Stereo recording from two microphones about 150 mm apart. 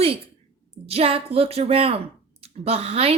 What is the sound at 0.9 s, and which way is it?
Speech, 40° right (ahead or behind).